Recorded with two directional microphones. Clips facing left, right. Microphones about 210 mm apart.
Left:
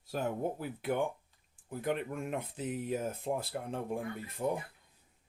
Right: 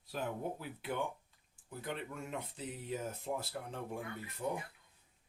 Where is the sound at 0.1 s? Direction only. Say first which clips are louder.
Left 5 dB; 45° left (ahead or behind).